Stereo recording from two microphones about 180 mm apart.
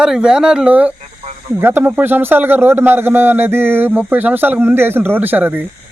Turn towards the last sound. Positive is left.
turn(degrees=-10)  # may be behind; listen again after turning